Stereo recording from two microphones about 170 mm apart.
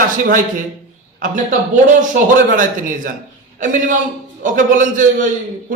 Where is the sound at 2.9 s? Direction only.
50° right (ahead or behind).